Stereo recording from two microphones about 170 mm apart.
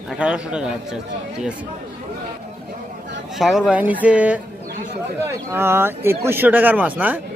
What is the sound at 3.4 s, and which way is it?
Speech, centre (ahead or behind).